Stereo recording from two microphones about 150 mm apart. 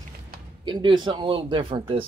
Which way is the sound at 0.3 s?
85° right.